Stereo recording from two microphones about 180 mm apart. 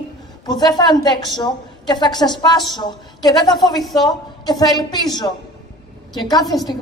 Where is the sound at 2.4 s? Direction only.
25° left (ahead or behind).